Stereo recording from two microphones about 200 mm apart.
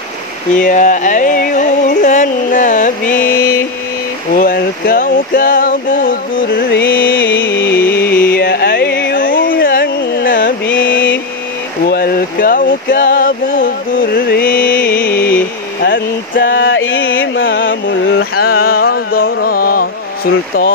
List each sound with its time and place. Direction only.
0.6 s a sound: 40° left (ahead or behind)
6.8 s music: 50° left (ahead or behind)
10.7 s mantra: 70° left (ahead or behind)
11.9 s a sound: 50° left (ahead or behind)
15.0 s music: 55° left (ahead or behind)
15.8 s music: 70° left (ahead or behind)
18.1 s mantra: 50° left (ahead or behind)